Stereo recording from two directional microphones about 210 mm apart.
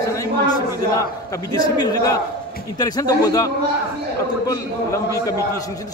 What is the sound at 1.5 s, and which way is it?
A man's voice, 20° left (ahead or behind).